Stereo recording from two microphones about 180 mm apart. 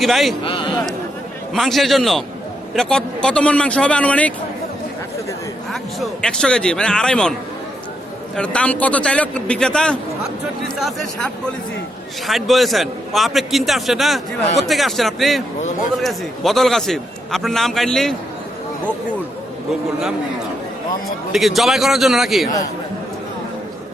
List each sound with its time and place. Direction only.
0.0 s a man's voice: centre (ahead or behind)
0.4 s a man's voice: 25° left (ahead or behind)
1.5 s a man's voice: centre (ahead or behind)
5.7 s a man's voice: centre (ahead or behind)
8.4 s a man's voice: 5° left (ahead or behind)
21.3 s a man's voice: centre (ahead or behind)